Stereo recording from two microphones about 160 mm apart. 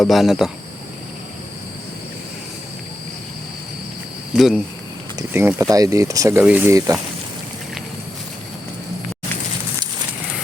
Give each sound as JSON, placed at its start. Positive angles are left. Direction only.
{"t": 0.0, "sound": "speech", "side_deg": 0}
{"t": 4.4, "sound": "speech", "side_deg": 0}
{"t": 5.3, "sound": "speech", "side_deg": -15}